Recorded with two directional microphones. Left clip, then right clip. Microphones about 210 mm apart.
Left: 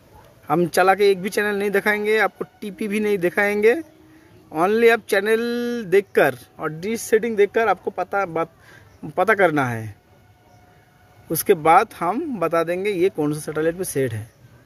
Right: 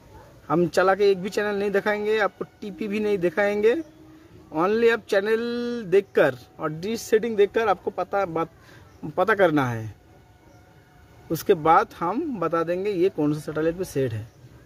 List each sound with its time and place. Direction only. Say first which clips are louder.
0.5 s speech: left 3 dB; 20° left (ahead or behind)
11.2 s speech: left 3 dB; 20° left (ahead or behind)